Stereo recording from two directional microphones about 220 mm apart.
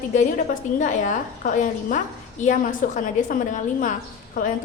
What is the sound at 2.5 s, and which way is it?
A woman's voice, 35° left (ahead or behind).